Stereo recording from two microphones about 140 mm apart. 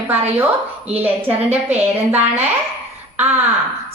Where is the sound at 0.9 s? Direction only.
10° right (ahead or behind).